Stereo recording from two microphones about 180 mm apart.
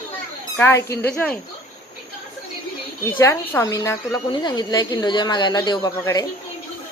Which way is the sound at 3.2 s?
15° left (ahead or behind).